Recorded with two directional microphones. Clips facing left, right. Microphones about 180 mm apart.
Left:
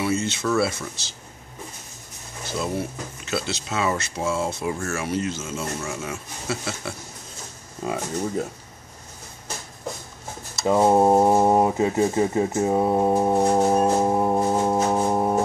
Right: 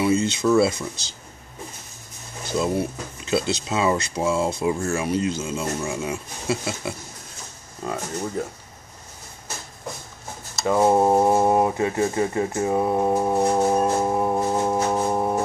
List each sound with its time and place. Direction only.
0.2 s speech: 15° right (ahead or behind)
2.6 s speech: 20° right (ahead or behind)
7.8 s speech: 15° left (ahead or behind)
10.6 s speech: 10° left (ahead or behind)
13.9 s music: 15° left (ahead or behind)